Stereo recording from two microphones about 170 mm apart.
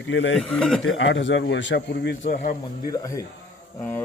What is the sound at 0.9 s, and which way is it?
A man's voice, 90° left.